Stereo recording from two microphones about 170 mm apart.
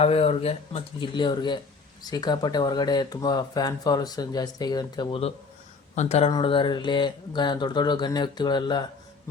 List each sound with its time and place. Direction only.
0.0 s speech: 35° left (ahead or behind)
6.0 s speech: 40° left (ahead or behind)
6.3 s speech: 30° left (ahead or behind)